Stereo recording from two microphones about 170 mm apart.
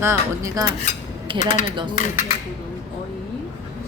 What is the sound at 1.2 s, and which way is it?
Speech, 30° right (ahead or behind).